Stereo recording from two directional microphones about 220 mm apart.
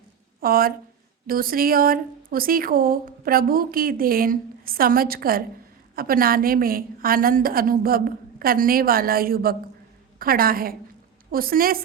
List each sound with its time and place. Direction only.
0.3 s a woman's voice: 40° right (ahead or behind)